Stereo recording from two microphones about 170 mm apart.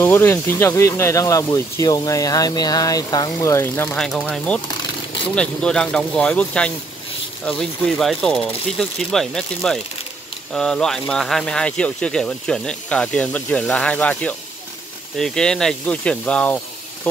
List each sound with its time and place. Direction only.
0.0 s speech: 15° left (ahead or behind)